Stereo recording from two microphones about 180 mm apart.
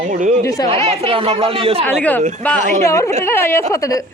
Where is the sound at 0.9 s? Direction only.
35° right (ahead or behind).